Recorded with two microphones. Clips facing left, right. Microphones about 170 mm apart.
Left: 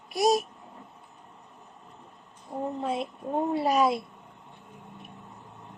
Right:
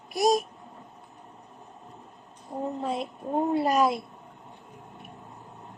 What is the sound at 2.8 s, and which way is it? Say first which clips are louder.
Speech: even; centre (ahead or behind).